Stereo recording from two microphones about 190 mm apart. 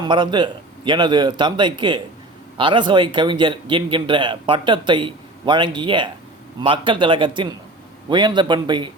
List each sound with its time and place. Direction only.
0.0 s a man's voice: 25° right (ahead or behind)